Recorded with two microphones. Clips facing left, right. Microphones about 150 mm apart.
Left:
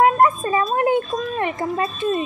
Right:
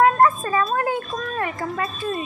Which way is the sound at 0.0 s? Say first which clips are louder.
Left 1 dB; 20° left (ahead or behind).